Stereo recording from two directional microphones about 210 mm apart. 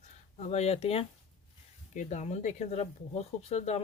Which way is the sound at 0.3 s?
30° left (ahead or behind).